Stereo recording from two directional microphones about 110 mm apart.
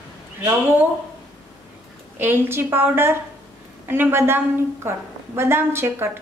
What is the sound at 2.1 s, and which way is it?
Speech, 20° right (ahead or behind).